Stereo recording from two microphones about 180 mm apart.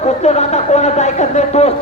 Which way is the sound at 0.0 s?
40° left (ahead or behind).